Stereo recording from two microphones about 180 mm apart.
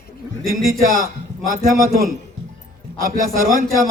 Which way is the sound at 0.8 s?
50° right (ahead or behind).